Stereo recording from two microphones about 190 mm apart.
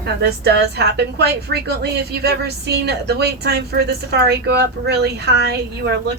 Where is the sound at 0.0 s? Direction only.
60° right (ahead or behind).